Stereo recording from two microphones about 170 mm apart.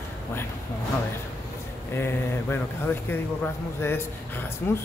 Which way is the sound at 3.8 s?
15° left (ahead or behind).